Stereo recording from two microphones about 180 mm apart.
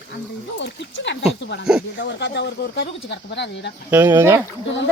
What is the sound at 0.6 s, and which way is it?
Speech, 80° left.